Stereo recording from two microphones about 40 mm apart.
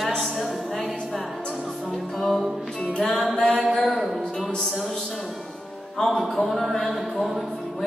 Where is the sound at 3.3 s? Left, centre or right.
Centre.